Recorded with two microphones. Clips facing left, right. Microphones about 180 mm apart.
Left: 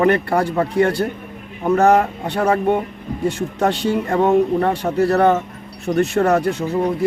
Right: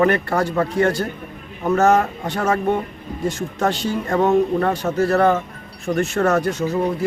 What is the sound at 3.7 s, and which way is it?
Speech, 65° left (ahead or behind).